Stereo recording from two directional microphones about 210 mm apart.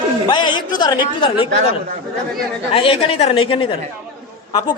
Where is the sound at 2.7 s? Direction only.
25° left (ahead or behind).